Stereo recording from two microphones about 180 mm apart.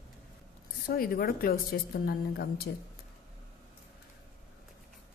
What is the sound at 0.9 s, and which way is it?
A woman's voice, 55° left (ahead or behind).